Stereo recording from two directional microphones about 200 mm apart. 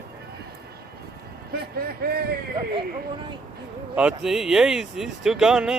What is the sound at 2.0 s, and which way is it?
Speech, 50° right (ahead or behind).